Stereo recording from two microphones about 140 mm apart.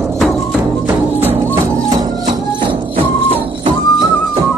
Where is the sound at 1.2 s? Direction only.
25° right (ahead or behind).